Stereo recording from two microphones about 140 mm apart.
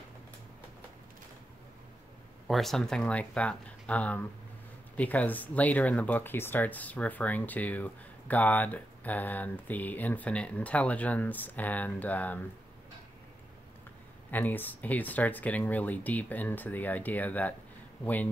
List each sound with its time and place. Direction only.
2.4 s speech: centre (ahead or behind)
14.3 s speech: 15° left (ahead or behind)